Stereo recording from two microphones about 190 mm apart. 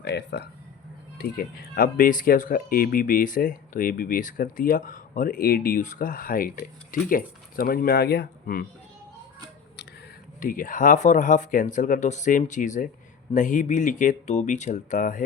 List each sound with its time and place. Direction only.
0.0 s speech: 60° left (ahead or behind)
10.4 s speech: 45° left (ahead or behind)